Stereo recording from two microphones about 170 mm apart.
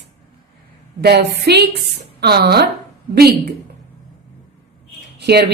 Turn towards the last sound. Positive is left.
turn(degrees=-70)  # may be behind; listen again after turning